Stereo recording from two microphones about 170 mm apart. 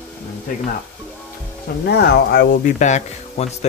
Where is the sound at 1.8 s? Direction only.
75° left (ahead or behind); by 3.7 s 40° left (ahead or behind).